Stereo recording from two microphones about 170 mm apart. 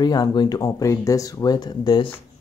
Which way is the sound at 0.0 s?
25° left (ahead or behind).